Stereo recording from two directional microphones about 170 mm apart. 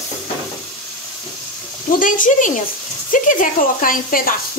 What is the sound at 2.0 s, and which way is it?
Speech, 50° left (ahead or behind).